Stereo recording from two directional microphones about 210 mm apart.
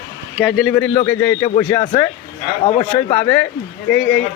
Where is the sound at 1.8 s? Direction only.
20° left (ahead or behind).